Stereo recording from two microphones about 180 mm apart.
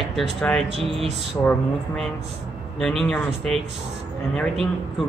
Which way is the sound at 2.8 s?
Centre (ahead or behind).